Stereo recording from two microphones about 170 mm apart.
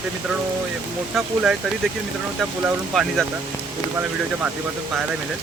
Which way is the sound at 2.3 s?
Centre (ahead or behind).